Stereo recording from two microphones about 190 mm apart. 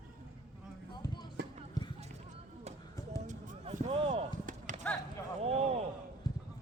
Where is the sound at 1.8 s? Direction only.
20° left (ahead or behind).